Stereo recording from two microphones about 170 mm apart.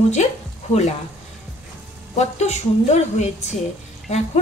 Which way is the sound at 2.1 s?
40° left (ahead or behind).